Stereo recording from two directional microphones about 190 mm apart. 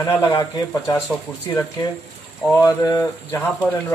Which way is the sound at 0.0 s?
15° left (ahead or behind).